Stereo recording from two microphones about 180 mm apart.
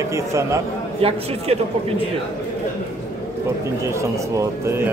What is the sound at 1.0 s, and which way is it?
Speech, 35° right (ahead or behind).